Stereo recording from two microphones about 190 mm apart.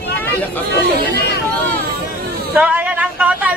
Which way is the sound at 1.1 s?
60° left (ahead or behind).